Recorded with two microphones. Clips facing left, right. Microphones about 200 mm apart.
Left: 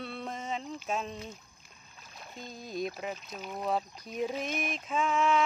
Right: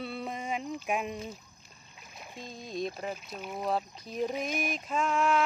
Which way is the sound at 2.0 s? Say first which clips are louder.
Right 1 dB; 15° right (ahead or behind).